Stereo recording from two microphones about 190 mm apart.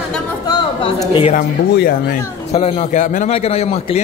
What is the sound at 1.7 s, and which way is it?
Speech, 55° left (ahead or behind).